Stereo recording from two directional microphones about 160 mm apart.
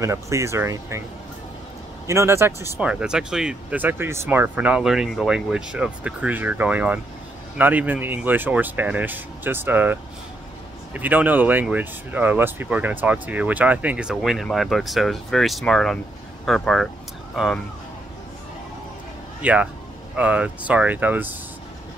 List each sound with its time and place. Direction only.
0.0 s speech: 20° right (ahead or behind)
2.0 s speech: 15° right (ahead or behind); by 16.9 s centre (ahead or behind)
19.4 s speech: 5° right (ahead or behind)